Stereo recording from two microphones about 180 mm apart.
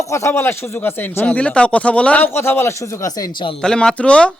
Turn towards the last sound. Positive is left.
turn(degrees=5)  # may be behind; listen again after turning